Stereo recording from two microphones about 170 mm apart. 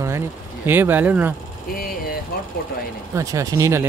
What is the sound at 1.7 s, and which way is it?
Speech, 60° left (ahead or behind).